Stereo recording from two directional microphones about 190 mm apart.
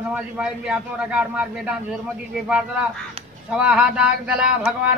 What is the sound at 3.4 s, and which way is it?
Speech, 5° right (ahead or behind).